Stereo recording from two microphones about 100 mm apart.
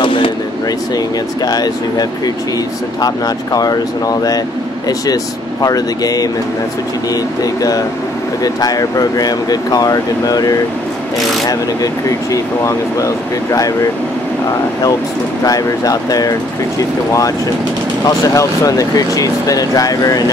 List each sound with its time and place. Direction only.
0.0 s a sound: 60° left (ahead or behind)
0.9 s speech: 40° left (ahead or behind)
3.5 s speech: 40° left (ahead or behind)
7.4 s speech: 40° left (ahead or behind)
15.4 s speech: 40° left (ahead or behind)
18.0 s speech: 35° left (ahead or behind)